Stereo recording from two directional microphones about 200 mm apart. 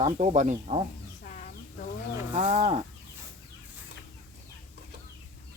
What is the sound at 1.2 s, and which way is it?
Chicken, 40° left (ahead or behind).